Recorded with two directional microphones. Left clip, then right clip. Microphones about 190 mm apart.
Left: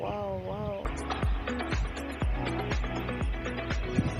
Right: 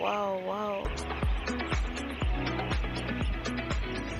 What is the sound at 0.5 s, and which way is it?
Speech, 30° right (ahead or behind).